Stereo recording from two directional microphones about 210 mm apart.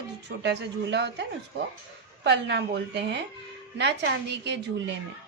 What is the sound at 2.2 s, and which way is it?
A woman's voice, 55° right (ahead or behind).